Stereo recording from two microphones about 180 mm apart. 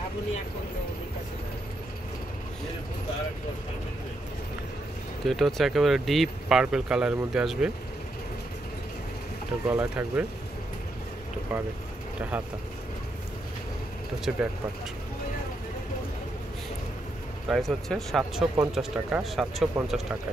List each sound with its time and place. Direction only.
5.2 s speech: centre (ahead or behind)
9.7 s speech: 10° right (ahead or behind)
12.2 s speech: 10° right (ahead or behind)
14.3 s speech: 5° right (ahead or behind)
17.5 s speech: centre (ahead or behind)